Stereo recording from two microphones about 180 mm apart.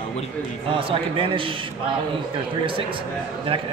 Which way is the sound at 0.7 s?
30° right (ahead or behind).